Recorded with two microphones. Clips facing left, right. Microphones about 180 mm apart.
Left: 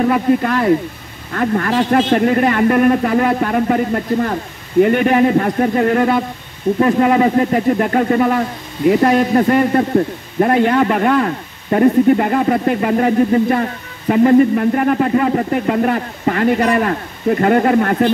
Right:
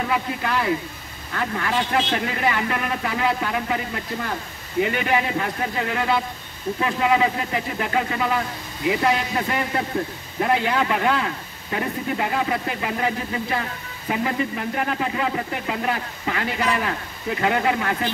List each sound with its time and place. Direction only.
0.1 s speech: 50° left (ahead or behind)